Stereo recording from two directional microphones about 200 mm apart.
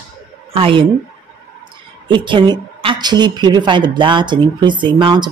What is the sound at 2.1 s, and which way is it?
A woman's voice, 25° right (ahead or behind).